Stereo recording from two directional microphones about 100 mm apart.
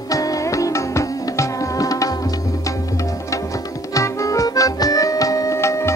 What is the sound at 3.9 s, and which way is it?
Music, 35° left (ahead or behind).